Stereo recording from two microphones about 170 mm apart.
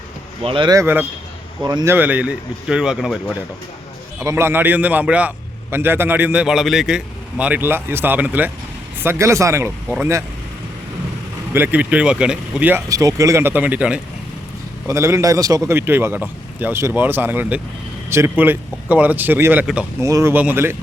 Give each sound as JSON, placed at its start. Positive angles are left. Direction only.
{"t": 0.4, "sound": "a man's voice", "side_deg": -30}
{"t": 4.2, "sound": "a man's voice", "side_deg": -15}
{"t": 11.5, "sound": "a man's voice", "side_deg": -10}